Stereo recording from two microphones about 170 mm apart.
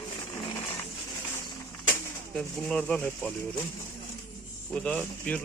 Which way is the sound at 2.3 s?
5° left (ahead or behind).